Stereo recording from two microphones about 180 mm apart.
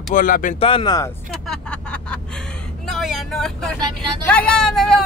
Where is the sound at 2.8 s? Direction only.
Centre (ahead or behind).